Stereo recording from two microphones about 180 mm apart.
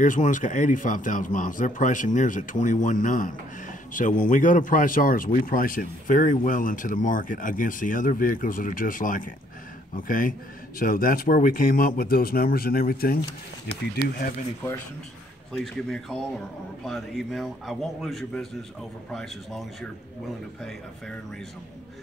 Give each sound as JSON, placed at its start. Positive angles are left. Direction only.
{"t": 0.0, "sound": "speech", "side_deg": 45}
{"t": 15.5, "sound": "a man's voice", "side_deg": 0}